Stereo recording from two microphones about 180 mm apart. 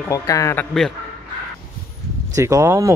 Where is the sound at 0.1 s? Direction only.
20° left (ahead or behind).